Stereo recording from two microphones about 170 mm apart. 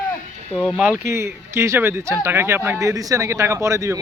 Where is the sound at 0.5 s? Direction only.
5° left (ahead or behind).